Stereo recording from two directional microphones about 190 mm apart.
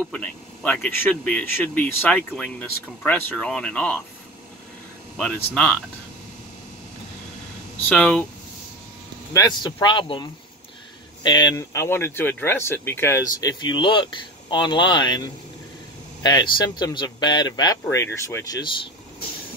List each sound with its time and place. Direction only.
0.1 s speech: 5° left (ahead or behind)
5.1 s speech: 5° left (ahead or behind)
7.9 s speech: 5° left (ahead or behind)
9.3 s speech: 20° left (ahead or behind)
11.2 s speech: 20° left (ahead or behind)